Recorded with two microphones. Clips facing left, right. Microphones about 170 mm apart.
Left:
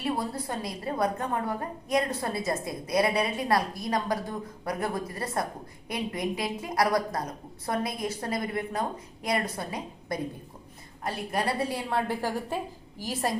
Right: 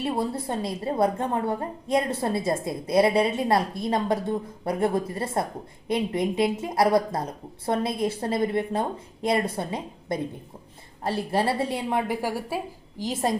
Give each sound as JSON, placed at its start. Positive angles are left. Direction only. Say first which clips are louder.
{"t": 0.0, "sound": "a woman's voice", "louder": "right 3 dB", "side_deg": -25}
{"t": 13.0, "sound": "a woman's voice", "louder": "right 4 dB", "side_deg": -20}